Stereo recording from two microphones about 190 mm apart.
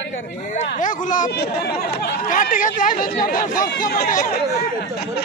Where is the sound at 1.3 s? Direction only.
55° left (ahead or behind).